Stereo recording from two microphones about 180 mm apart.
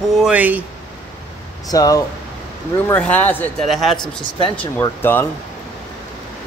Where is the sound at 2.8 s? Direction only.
10° left (ahead or behind).